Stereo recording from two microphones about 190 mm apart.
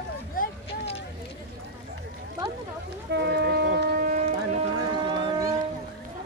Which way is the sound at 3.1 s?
60° right (ahead or behind).